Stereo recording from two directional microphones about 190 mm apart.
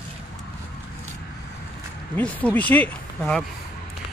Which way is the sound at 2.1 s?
10° left (ahead or behind).